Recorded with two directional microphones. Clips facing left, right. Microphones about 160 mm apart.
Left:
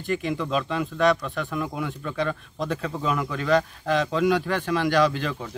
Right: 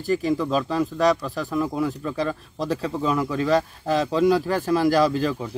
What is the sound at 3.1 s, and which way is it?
Speech, 30° right (ahead or behind).